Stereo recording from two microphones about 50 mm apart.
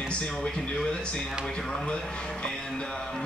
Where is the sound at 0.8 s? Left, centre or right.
Centre.